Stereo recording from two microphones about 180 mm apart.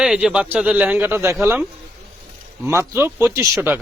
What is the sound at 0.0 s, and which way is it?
Speech, 5° right (ahead or behind).